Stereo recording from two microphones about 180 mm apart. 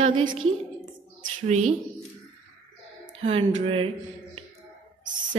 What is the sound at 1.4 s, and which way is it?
Speech, 40° right (ahead or behind).